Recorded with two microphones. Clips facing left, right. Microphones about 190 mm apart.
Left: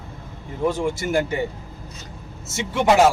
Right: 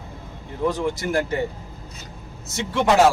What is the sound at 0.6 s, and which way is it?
Speech, 10° left (ahead or behind).